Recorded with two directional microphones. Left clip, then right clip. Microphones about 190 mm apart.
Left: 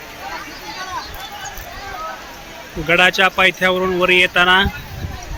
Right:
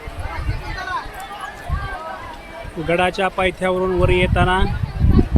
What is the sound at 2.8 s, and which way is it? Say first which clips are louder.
Speech: left 5 dB; centre (ahead or behind).